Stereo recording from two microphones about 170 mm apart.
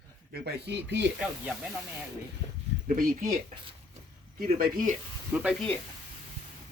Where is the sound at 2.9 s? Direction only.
55° right (ahead or behind).